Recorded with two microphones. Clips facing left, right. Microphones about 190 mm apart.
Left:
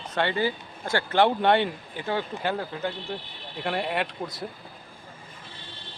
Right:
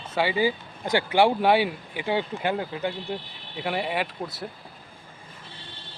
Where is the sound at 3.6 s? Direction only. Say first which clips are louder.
Even; centre (ahead or behind).